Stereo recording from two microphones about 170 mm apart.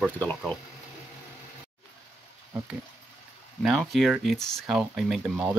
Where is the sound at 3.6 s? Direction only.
Centre (ahead or behind).